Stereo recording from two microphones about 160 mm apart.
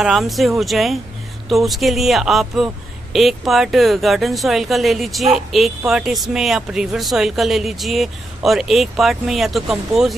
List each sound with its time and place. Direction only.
0.0 s speech: centre (ahead or behind)